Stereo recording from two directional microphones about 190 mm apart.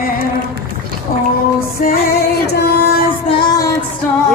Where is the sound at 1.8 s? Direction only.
55° left (ahead or behind).